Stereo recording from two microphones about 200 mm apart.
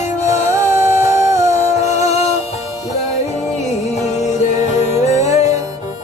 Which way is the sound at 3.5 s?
35° left (ahead or behind).